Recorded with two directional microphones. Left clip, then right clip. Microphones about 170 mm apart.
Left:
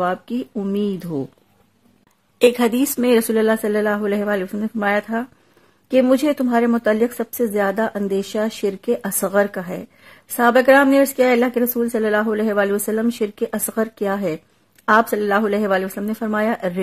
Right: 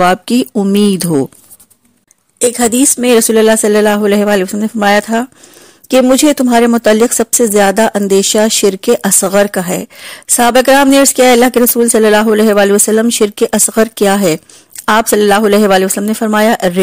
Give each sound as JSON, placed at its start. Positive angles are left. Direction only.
{"t": 0.0, "sound": "speech", "side_deg": -60}
{"t": 2.3, "sound": "a woman's voice", "side_deg": -20}
{"t": 2.7, "sound": "speech", "side_deg": -30}